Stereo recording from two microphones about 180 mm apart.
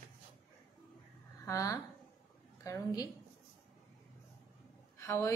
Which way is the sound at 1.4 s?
20° left (ahead or behind).